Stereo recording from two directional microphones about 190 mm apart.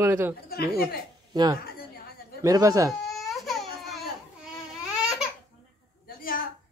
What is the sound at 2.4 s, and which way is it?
Speech, 20° right (ahead or behind).